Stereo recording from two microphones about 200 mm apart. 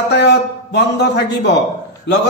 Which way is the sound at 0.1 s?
55° left (ahead or behind).